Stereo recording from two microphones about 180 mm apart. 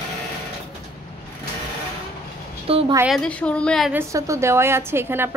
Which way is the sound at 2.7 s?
30° right (ahead or behind).